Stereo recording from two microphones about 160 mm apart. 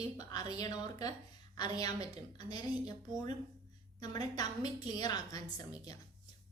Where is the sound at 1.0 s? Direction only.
25° left (ahead or behind).